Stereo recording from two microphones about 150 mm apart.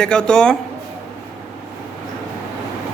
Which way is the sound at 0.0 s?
5° left (ahead or behind).